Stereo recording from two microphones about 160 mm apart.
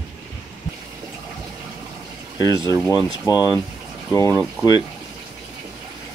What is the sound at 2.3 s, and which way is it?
Speech, 25° left (ahead or behind).